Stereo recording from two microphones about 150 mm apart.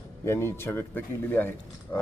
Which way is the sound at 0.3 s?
15° left (ahead or behind).